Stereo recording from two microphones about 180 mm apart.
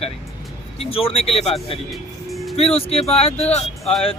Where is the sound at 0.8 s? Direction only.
30° left (ahead or behind).